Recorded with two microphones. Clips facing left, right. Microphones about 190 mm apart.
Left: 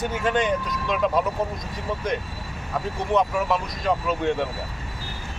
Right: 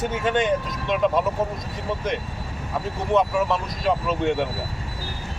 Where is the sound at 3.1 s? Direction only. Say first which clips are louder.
Right 1 dB; centre (ahead or behind).